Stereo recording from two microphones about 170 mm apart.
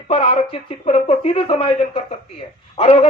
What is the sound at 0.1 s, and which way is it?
Speech, 35° left (ahead or behind).